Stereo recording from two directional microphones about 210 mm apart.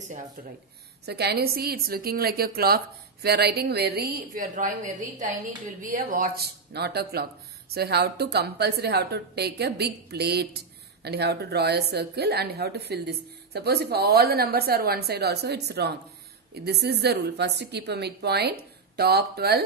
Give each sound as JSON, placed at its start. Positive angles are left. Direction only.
{"t": 1.0, "sound": "a woman's voice", "side_deg": -50}